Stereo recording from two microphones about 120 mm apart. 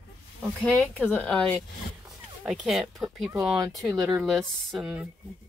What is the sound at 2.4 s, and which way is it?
Speech, 5° right (ahead or behind).